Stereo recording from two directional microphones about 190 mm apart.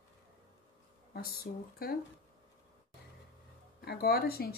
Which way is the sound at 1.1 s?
50° left (ahead or behind).